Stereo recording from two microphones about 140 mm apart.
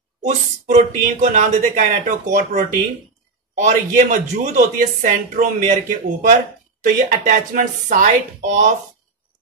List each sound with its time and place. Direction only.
0.2 s speech: 60° right (ahead or behind)
6.8 s speech: 75° right (ahead or behind)